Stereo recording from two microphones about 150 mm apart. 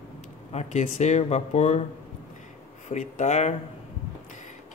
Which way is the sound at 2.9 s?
50° left (ahead or behind).